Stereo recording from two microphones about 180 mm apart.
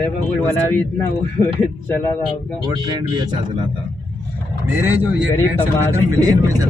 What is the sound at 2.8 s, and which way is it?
Speech, 25° right (ahead or behind).